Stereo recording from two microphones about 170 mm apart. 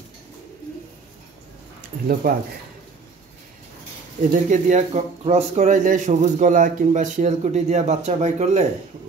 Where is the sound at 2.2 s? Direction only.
60° right (ahead or behind).